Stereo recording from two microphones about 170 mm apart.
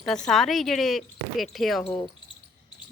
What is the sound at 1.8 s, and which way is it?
Speech, 35° left (ahead or behind).